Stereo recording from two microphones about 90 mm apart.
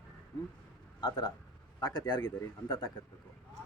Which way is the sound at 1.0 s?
55° left (ahead or behind).